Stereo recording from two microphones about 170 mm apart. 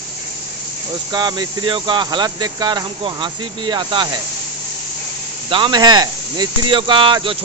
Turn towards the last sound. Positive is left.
turn(degrees=-30)  # may be behind; listen again after turning